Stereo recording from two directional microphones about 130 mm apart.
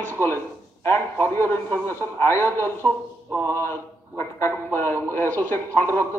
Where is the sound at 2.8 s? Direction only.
25° right (ahead or behind).